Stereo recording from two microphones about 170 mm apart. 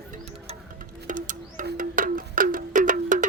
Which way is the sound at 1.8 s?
55° right (ahead or behind).